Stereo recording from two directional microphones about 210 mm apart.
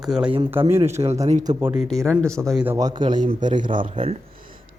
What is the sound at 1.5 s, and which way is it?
Speech, 10° right (ahead or behind).